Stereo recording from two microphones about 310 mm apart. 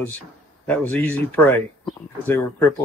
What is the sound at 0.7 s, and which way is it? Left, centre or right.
Speech, centre.